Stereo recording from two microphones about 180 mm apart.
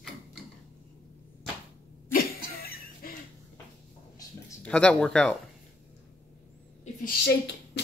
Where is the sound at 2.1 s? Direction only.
55° left (ahead or behind).